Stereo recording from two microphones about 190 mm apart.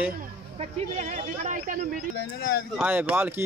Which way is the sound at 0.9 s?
40° right (ahead or behind).